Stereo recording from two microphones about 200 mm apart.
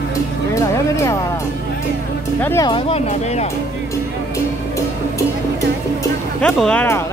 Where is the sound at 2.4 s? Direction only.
15° left (ahead or behind).